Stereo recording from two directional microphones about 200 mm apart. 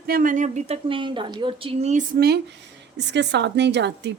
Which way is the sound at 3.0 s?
60° right (ahead or behind).